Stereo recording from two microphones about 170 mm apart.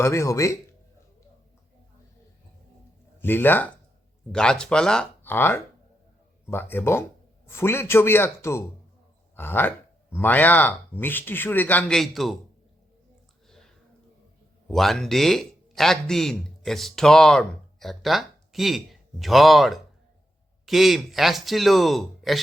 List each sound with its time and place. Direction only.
0.0 s speech: 15° left (ahead or behind)
3.2 s speech: 10° left (ahead or behind)
14.7 s a man's voice: centre (ahead or behind)